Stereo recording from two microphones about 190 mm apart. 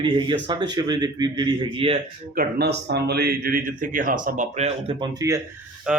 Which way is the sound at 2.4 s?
60° right (ahead or behind).